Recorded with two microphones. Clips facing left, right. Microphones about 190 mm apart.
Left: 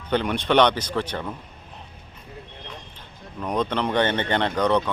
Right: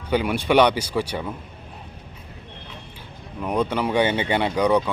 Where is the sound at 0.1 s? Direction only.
10° right (ahead or behind).